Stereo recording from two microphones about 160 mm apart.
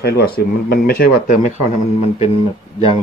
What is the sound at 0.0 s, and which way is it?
Speech, 80° left.